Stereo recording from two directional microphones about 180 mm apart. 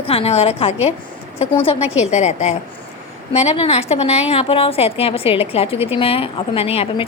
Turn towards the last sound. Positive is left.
turn(degrees=30)  # may be behind; listen again after turning